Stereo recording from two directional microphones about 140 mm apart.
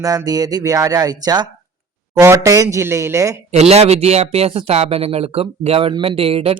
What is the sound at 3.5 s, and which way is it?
A man's voice, 50° right (ahead or behind).